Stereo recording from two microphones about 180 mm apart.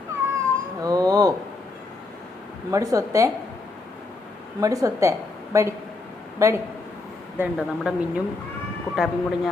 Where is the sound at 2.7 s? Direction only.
20° right (ahead or behind).